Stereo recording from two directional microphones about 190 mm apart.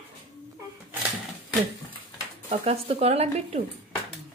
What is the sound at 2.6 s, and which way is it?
Speech, 30° right (ahead or behind).